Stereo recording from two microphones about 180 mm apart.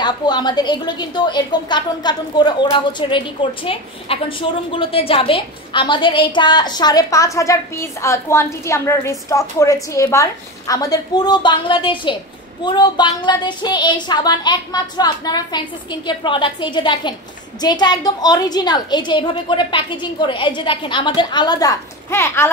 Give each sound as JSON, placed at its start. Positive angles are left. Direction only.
{"t": 0.0, "sound": "a woman's voice", "side_deg": 25}